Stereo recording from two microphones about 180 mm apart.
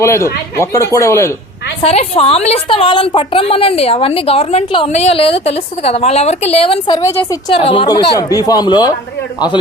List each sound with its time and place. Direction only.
0.0 s speech: 15° left (ahead or behind)
1.8 s a woman's voice: 35° left (ahead or behind)